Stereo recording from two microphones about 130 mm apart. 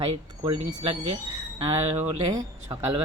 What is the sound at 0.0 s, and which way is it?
Speech, 45° right (ahead or behind).